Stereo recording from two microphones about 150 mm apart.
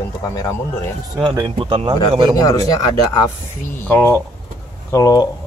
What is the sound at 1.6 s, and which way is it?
Speech, 30° right (ahead or behind).